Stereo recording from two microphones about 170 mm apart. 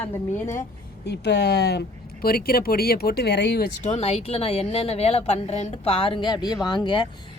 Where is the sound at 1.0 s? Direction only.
80° left.